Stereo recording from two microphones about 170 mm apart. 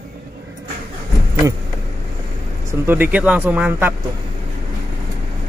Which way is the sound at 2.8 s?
10° right (ahead or behind).